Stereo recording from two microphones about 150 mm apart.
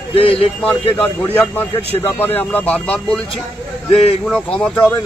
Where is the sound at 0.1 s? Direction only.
40° left (ahead or behind).